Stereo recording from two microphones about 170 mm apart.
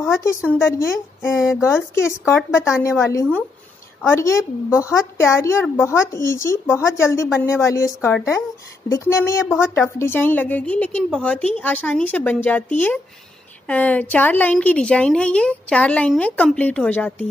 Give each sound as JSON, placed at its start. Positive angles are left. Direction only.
{"t": 0.0, "sound": "a woman's voice", "side_deg": 15}